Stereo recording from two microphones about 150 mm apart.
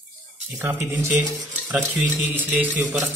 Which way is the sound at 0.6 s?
15° right (ahead or behind).